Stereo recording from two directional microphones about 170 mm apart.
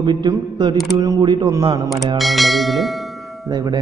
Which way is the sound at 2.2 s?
Centre (ahead or behind).